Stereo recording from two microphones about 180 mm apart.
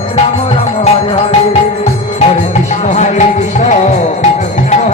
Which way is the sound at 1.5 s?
35° left (ahead or behind).